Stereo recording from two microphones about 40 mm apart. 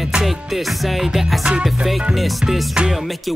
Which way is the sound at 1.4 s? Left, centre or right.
Right.